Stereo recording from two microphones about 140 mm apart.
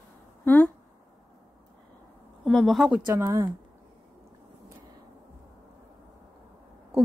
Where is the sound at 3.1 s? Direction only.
20° right (ahead or behind).